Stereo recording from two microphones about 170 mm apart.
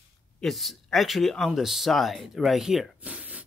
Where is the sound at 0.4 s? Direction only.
Centre (ahead or behind).